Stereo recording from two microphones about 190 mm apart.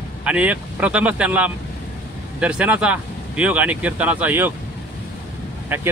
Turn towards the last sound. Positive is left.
turn(degrees=-10)  # may be behind; listen again after turning